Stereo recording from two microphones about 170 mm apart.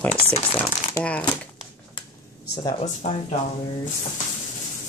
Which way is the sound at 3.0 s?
45° left (ahead or behind).